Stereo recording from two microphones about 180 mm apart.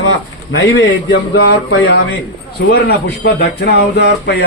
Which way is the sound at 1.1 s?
90° left.